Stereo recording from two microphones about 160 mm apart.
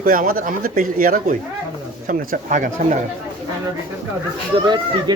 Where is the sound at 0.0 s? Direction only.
60° right (ahead or behind).